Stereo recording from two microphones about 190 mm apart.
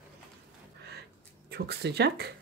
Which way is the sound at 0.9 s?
60° right (ahead or behind).